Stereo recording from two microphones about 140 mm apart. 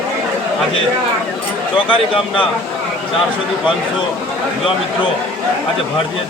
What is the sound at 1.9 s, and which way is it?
Speech, 40° left (ahead or behind).